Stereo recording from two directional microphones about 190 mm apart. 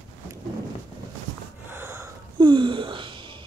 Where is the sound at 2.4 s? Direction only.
25° right (ahead or behind).